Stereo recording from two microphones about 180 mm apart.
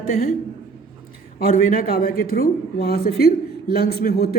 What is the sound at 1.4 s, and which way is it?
Speech, 55° left (ahead or behind).